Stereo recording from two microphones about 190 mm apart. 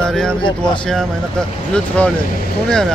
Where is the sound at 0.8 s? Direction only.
5° left (ahead or behind).